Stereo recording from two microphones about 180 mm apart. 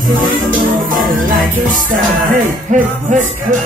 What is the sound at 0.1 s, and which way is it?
Music, 50° right (ahead or behind).